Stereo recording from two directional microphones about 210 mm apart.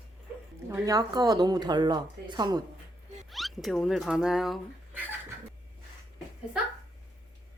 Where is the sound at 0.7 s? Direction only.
15° right (ahead or behind).